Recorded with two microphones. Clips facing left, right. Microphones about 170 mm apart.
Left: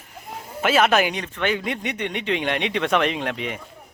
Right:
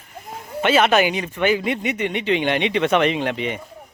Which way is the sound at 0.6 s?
Centre (ahead or behind).